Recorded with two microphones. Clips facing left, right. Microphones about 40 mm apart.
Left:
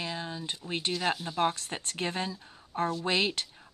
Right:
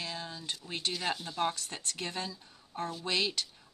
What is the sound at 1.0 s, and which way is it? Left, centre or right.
Speech, centre.